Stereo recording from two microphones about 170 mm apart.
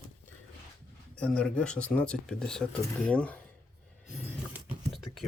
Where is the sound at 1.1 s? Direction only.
5° left (ahead or behind).